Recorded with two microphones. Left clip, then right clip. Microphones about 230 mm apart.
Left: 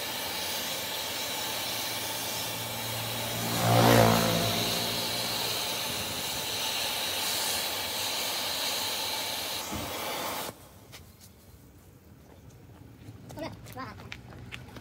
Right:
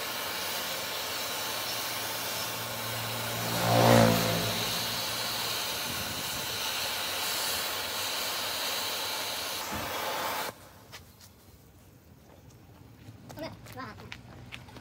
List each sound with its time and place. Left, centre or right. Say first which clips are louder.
0.0 s steam: even; centre
3.6 s vehicle: even; centre
4.1 s vehicle: left 2 dB; centre
13.4 s a sound: left 1 dB; centre
14.0 s run: left 1 dB; centre